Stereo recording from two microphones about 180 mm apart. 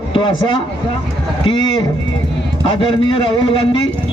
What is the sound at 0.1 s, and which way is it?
Speech, 25° left (ahead or behind).